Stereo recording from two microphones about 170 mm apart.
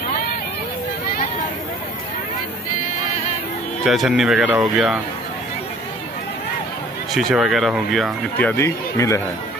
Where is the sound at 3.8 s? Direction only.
Centre (ahead or behind).